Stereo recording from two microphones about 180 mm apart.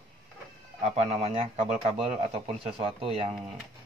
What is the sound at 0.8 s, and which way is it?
Speech, 35° right (ahead or behind).